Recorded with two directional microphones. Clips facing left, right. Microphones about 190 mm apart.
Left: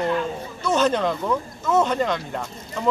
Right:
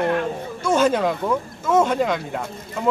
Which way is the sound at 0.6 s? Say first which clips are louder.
Right 2 dB; 10° right (ahead or behind).